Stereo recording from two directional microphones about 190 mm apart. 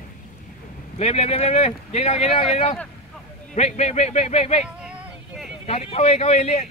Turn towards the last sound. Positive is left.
turn(degrees=35)  # may be behind; listen again after turning